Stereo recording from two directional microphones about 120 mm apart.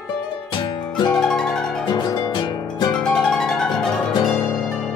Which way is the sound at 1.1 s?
5° left (ahead or behind).